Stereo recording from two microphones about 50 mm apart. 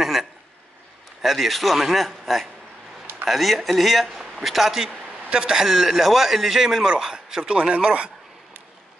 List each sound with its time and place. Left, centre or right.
0.0 s a sound: centre
1.2 s a man's voice: centre
5.3 s a man's voice: centre
7.5 s speech: right